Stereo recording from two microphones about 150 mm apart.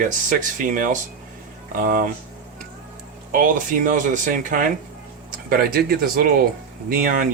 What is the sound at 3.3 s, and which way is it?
Speech, 60° right (ahead or behind).